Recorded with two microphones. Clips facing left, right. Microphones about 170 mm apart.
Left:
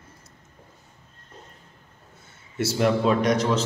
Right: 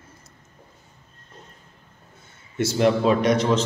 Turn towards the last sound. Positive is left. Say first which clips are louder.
# right 2 dB
turn(degrees=0)  # may be behind; listen again after turning